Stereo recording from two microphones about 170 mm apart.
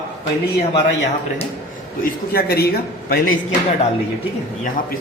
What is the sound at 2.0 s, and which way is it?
A man's voice, 65° left (ahead or behind).